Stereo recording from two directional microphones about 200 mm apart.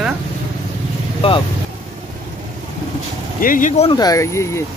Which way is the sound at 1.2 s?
25° left (ahead or behind).